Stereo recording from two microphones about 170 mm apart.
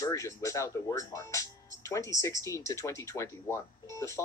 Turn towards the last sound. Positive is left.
turn(degrees=15)  # may be behind; listen again after turning